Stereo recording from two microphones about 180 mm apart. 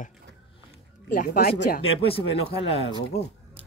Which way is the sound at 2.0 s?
30° left (ahead or behind).